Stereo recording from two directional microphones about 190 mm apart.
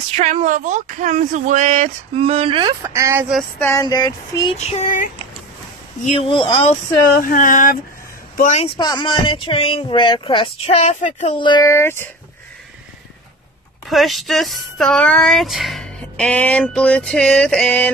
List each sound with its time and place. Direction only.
0.2 s speech: 35° right (ahead or behind)
2.8 s speech: 15° right (ahead or behind)
3.5 s speech: 15° left (ahead or behind)
4.6 s female singing: 35° left (ahead or behind)
6.0 s speech: 30° left (ahead or behind)
7.2 s speech: 45° left (ahead or behind); by 12.1 s 10° left (ahead or behind)
13.8 s speech: centre (ahead or behind)